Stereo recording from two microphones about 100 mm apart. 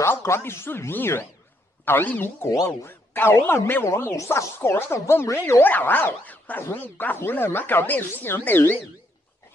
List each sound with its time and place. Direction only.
0.0 s speech: 25° left (ahead or behind)
2.4 s speech: 30° left (ahead or behind)